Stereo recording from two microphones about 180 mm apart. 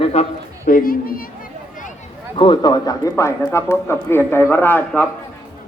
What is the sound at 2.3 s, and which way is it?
A man's voice, 25° left (ahead or behind).